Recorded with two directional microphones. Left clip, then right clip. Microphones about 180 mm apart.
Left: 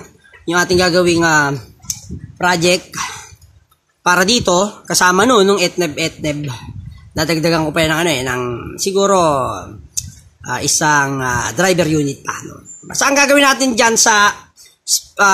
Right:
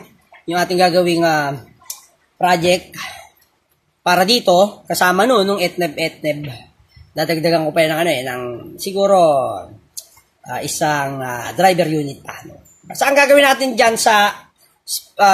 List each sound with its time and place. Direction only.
0.5 s speech: 55° left (ahead or behind)